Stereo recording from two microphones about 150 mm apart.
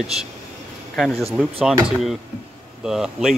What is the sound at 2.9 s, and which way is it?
Speech, centre (ahead or behind).